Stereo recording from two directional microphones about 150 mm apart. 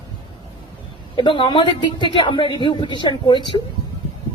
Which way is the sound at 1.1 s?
35° left (ahead or behind).